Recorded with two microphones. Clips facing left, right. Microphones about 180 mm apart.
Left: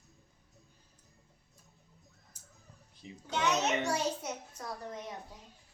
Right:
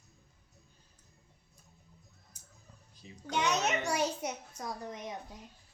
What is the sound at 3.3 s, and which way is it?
A child's voice, 15° right (ahead or behind).